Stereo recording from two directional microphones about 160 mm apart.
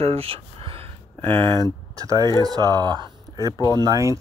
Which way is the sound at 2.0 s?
20° right (ahead or behind).